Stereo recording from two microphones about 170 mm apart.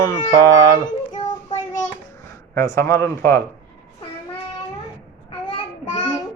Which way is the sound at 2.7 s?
15° left (ahead or behind).